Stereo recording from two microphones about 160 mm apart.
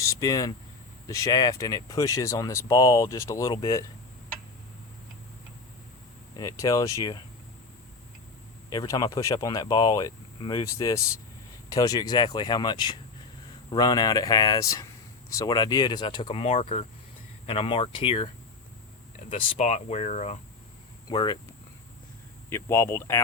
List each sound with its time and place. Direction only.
0.0 s speech: 20° left (ahead or behind)
6.3 s speech: 20° left (ahead or behind)
8.7 s speech: 25° left (ahead or behind)
19.3 s speech: 40° left (ahead or behind)
21.1 s speech: 25° left (ahead or behind)
22.4 s speech: 15° left (ahead or behind)